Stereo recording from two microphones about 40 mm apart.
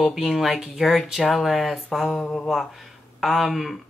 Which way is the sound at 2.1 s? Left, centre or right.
Left.